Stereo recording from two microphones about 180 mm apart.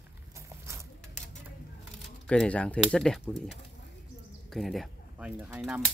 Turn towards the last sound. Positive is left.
turn(degrees=-5)  # may be behind; listen again after turning